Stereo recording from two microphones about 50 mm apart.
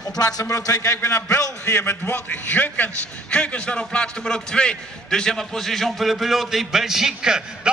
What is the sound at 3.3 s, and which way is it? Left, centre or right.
A man's voice, left.